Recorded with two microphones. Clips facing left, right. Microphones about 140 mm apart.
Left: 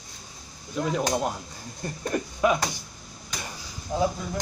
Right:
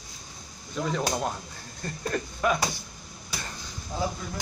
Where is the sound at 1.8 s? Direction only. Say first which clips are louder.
Left 2 dB; 15° left (ahead or behind).